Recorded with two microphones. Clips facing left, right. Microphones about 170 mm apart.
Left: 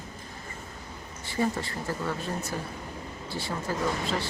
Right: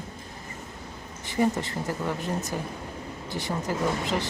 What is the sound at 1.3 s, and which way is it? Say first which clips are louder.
Speech: right 3 dB; 20° right (ahead or behind).